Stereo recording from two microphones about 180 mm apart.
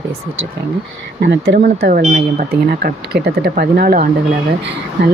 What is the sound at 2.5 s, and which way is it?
Speech, 60° right (ahead or behind).